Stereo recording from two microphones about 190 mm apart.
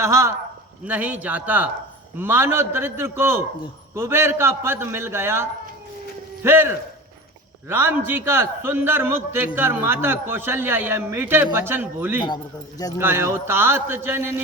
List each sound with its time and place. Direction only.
0.0 s a man's voice: 15° right (ahead or behind)
12.2 s speech: 20° left (ahead or behind)
13.0 s a man's voice: 10° right (ahead or behind)